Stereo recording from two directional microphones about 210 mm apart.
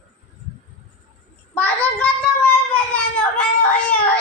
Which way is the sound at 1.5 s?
5° left (ahead or behind).